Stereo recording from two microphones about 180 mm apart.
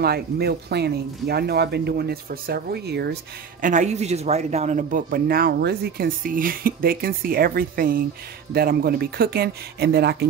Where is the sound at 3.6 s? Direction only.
45° right (ahead or behind).